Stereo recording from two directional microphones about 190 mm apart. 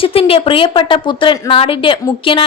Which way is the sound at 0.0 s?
30° left (ahead or behind).